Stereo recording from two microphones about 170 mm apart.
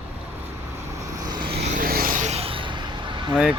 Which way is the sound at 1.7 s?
60° right (ahead or behind).